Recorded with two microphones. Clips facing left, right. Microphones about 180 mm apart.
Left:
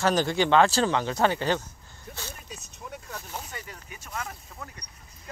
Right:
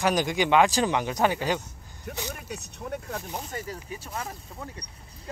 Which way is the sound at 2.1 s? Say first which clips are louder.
Right 6 dB; 70° right (ahead or behind).